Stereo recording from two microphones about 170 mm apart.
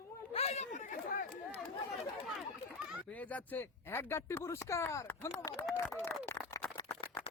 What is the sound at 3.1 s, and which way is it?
Speech, 10° left (ahead or behind).